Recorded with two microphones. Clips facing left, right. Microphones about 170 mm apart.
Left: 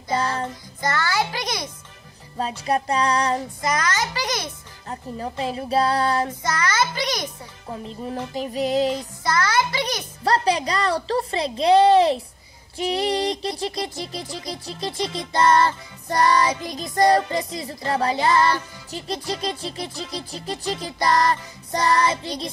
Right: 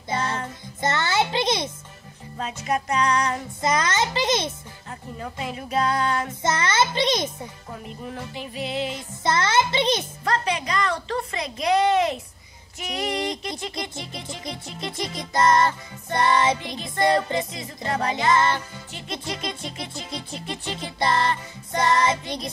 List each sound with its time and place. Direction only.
0.7 s music: 25° right (ahead or behind)
2.3 s music: 35° left (ahead or behind)
3.6 s a child's voice: 25° right (ahead or behind)
4.8 s music: 30° left (ahead or behind)
6.4 s a child's voice: 25° right (ahead or behind)
7.8 s music: 35° left (ahead or behind)
9.2 s music: 25° right (ahead or behind)
10.2 s music: 35° left (ahead or behind)
16.2 s a child's voice: 25° right (ahead or behind)
16.6 s music: 40° left (ahead or behind)
21.0 s a child's voice: 25° right (ahead or behind)
21.7 s music: 35° left (ahead or behind)